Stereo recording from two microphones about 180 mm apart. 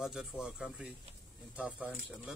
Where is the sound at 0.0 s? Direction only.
5° right (ahead or behind).